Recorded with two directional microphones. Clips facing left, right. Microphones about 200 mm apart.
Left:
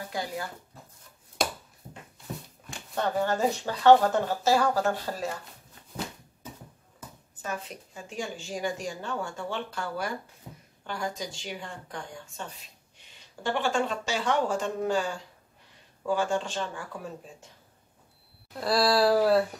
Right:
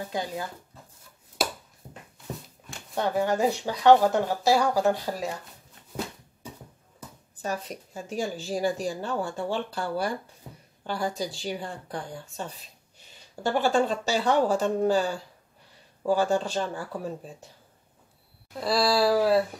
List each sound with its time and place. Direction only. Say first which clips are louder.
0.1 s speech: right 1 dB; 20° right (ahead or behind)
1.4 s a sound: even; 5° right (ahead or behind)
3.0 s speech: right 2 dB; 15° right (ahead or behind)
7.4 s speech: right 4 dB; 35° right (ahead or behind)
10.4 s a sound: right 1 dB; centre (ahead or behind)
10.8 s speech: right 4 dB; 35° right (ahead or behind)
18.6 s speech: even; centre (ahead or behind)